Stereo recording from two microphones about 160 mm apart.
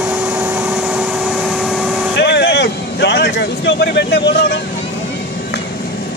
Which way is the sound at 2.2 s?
90° left.